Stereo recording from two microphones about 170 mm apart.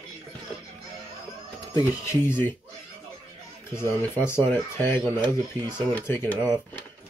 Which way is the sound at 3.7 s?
15° left (ahead or behind).